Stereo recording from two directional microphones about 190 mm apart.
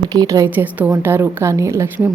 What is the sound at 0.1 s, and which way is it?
A woman's voice, 20° right (ahead or behind).